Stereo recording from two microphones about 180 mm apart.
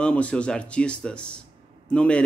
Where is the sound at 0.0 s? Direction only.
5° left (ahead or behind).